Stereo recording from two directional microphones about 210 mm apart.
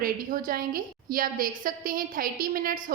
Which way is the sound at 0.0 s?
45° right (ahead or behind).